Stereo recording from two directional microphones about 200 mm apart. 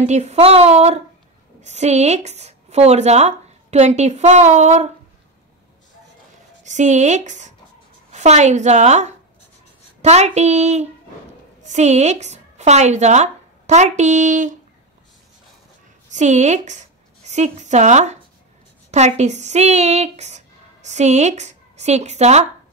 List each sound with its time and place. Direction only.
0.0 s a woman's voice: 35° right (ahead or behind)
6.6 s a woman's voice: 35° right (ahead or behind)
16.1 s a woman's voice: 35° right (ahead or behind)